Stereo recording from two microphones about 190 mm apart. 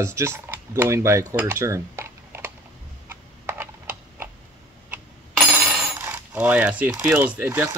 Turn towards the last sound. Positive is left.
turn(degrees=-10)  # may be behind; listen again after turning